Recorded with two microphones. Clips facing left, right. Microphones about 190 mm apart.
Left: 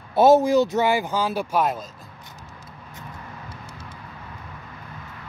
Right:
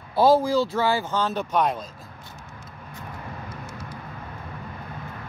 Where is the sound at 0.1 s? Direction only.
25° left (ahead or behind); by 1.8 s 5° left (ahead or behind).